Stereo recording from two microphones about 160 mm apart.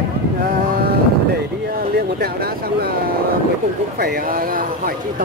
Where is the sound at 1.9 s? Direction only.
75° right (ahead or behind).